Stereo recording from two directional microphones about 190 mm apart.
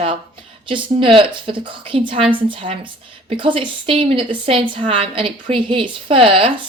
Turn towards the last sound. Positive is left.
turn(degrees=-30)  # may be behind; listen again after turning